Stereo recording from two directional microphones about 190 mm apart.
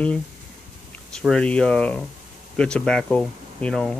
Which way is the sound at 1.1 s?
5° left (ahead or behind).